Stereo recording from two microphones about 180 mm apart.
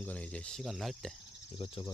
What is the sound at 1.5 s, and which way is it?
Speech, 30° left (ahead or behind).